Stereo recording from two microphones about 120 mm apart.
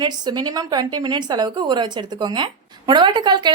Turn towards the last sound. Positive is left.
turn(degrees=-35)  # may be behind; listen again after turning